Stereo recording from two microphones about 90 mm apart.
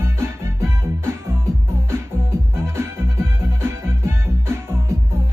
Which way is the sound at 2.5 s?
30° right (ahead or behind).